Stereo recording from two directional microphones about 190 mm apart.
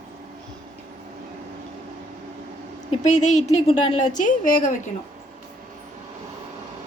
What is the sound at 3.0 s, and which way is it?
A woman's voice, 40° left (ahead or behind).